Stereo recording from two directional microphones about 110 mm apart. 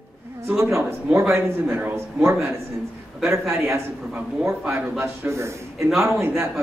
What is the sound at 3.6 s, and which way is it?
A man's voice, 25° right (ahead or behind).